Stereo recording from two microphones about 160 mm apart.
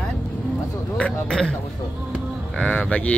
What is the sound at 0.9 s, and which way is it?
Speech, 5° left (ahead or behind).